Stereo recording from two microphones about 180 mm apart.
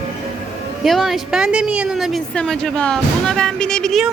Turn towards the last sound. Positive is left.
turn(degrees=0)  # may be behind; listen again after turning